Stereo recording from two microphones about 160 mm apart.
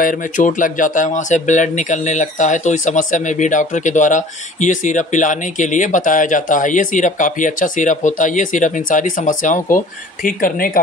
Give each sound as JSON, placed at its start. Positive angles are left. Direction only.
{"t": 0.0, "sound": "speech", "side_deg": 55}